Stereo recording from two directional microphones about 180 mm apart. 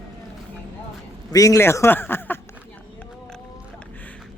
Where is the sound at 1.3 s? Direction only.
20° left (ahead or behind).